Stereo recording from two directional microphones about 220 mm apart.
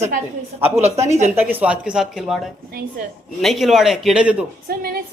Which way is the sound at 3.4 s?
Centre (ahead or behind).